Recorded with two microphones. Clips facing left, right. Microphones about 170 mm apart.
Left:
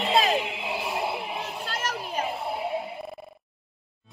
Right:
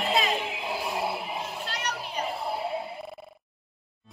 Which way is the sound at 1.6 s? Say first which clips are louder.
Left 2 dB; 45° left (ahead or behind).